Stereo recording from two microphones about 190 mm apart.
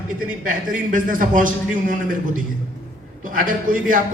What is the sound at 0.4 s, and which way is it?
A man's voice, 45° right (ahead or behind).